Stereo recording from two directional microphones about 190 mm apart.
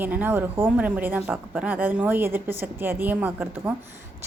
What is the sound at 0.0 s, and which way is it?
A woman's voice, 10° right (ahead or behind).